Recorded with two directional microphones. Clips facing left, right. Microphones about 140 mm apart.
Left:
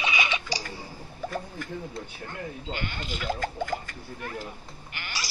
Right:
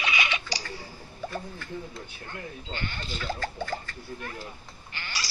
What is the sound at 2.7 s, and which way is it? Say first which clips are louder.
Sheep: left 1 dB; 15° left (ahead or behind).